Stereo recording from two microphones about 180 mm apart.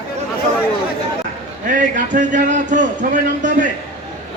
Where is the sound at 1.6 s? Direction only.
45° right (ahead or behind).